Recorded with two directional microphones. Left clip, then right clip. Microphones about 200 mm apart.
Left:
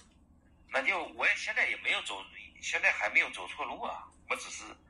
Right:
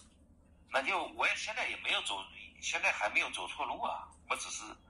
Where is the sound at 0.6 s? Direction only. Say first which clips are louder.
Left 2 dB; 10° left (ahead or behind).